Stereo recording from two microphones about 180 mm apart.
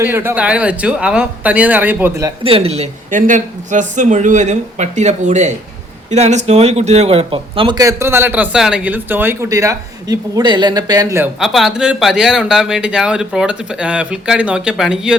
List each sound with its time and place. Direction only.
0.0 s speech: 15° right (ahead or behind)
2.4 s speech: 30° right (ahead or behind)
11.3 s speech: centre (ahead or behind)